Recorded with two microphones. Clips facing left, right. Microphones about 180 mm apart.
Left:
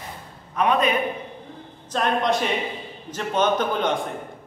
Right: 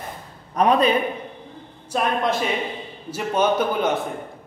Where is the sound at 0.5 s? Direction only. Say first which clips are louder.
Right 3 dB; 35° right (ahead or behind).